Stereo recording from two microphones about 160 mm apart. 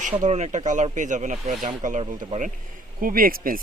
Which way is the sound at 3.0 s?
65° right (ahead or behind).